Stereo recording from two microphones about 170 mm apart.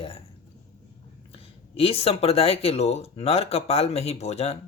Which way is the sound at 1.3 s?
35° left (ahead or behind).